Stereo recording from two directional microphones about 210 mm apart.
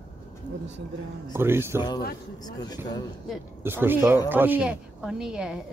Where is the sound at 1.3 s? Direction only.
10° right (ahead or behind).